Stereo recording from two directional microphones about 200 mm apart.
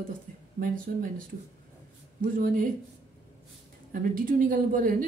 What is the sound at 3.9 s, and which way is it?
Speech, 45° right (ahead or behind).